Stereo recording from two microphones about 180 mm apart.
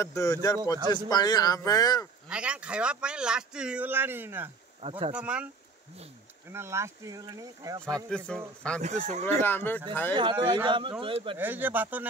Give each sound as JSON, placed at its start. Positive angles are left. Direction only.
{"t": 0.0, "sound": "speech", "side_deg": 15}
{"t": 2.2, "sound": "speech", "side_deg": -5}
{"t": 4.8, "sound": "speech", "side_deg": -30}
{"t": 5.1, "sound": "speech", "side_deg": -5}
{"t": 6.5, "sound": "speech", "side_deg": -15}
{"t": 8.3, "sound": "speech", "side_deg": 5}
{"t": 8.8, "sound": "speech", "side_deg": -40}
{"t": 9.4, "sound": "speech", "side_deg": 10}
{"t": 10.1, "sound": "speech", "side_deg": -25}
{"t": 11.3, "sound": "speech", "side_deg": -10}